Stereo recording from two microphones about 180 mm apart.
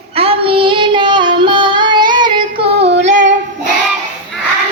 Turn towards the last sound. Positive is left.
turn(degrees=-80)